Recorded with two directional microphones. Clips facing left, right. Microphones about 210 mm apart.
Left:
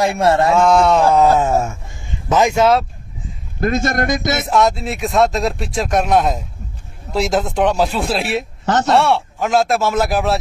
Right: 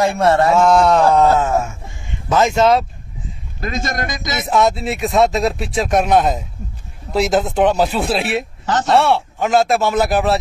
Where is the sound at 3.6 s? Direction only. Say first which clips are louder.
Left 6 dB; 55° left (ahead or behind).